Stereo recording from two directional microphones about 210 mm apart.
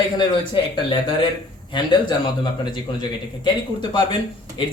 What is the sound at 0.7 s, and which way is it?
Speech, 20° left (ahead or behind).